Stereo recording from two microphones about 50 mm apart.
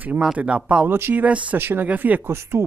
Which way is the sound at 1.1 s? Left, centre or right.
Right.